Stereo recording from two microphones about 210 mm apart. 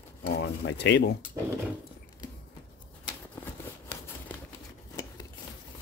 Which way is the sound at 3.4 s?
10° left (ahead or behind).